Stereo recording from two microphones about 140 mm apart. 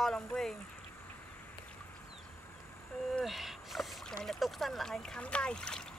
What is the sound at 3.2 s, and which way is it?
Rowboat, centre (ahead or behind).